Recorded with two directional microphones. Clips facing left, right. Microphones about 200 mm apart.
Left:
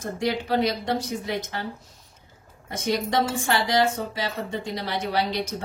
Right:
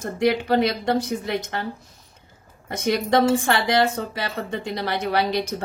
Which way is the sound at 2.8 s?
60° right (ahead or behind).